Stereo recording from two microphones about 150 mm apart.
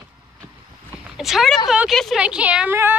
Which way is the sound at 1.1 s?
Centre (ahead or behind).